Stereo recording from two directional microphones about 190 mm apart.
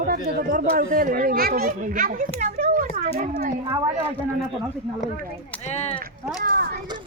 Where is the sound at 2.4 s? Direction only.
35° right (ahead or behind).